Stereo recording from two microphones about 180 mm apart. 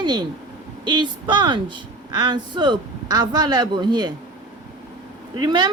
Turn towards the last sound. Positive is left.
turn(degrees=-25)  # may be behind; listen again after turning